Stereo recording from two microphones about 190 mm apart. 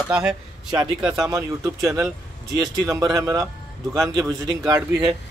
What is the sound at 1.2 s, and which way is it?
A man's voice, 15° right (ahead or behind).